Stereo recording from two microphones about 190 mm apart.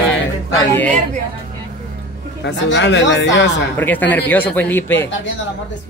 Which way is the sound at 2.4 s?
65° left (ahead or behind).